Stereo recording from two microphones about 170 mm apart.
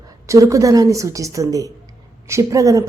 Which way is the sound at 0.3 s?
20° right (ahead or behind).